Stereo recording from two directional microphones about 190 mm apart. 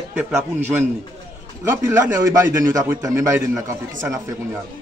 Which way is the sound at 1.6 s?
10° right (ahead or behind).